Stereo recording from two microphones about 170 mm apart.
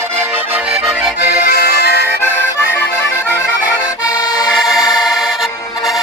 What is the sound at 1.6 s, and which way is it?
Accordion, 75° left (ahead or behind).